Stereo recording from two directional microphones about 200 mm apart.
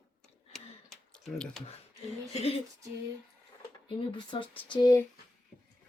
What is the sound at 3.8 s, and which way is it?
Speech, 25° left (ahead or behind).